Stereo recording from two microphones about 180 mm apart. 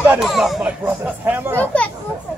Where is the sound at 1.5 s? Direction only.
10° left (ahead or behind).